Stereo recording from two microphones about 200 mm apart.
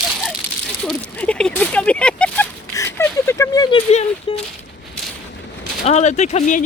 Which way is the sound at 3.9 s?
35° left (ahead or behind).